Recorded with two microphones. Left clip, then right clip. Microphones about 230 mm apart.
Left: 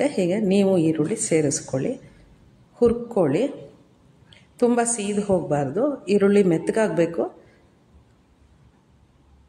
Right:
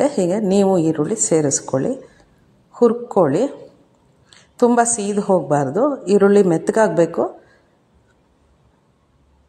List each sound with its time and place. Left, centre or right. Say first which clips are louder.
0.0 s a woman's voice: right 5 dB; centre
4.3 s a sound: right 5 dB; centre
4.9 s a woman's voice: right 5 dB; centre